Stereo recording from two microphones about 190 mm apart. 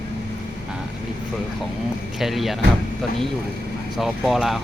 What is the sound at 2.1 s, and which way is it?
Speech, centre (ahead or behind).